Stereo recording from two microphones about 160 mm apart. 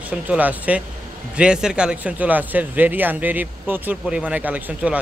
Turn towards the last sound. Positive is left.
turn(degrees=-10)  # may be behind; listen again after turning